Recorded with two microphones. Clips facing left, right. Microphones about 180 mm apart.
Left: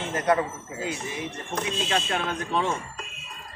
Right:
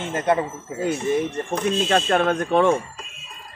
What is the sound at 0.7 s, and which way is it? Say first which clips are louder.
A man's voice: right 11 dB; 55° right (ahead or behind).